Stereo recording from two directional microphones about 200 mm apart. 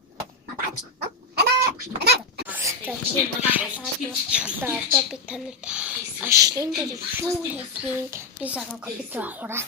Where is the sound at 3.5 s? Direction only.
5° right (ahead or behind).